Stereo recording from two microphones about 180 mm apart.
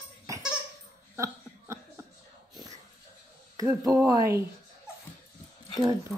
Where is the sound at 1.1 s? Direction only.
15° right (ahead or behind).